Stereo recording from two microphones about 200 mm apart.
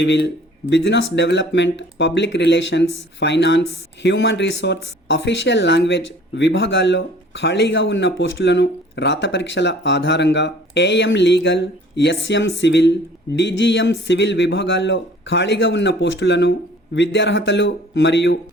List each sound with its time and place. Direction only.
0.0 s speech: 60° left (ahead or behind)